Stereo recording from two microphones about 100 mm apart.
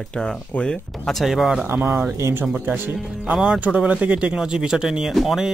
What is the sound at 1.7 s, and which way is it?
Speech, 25° right (ahead or behind).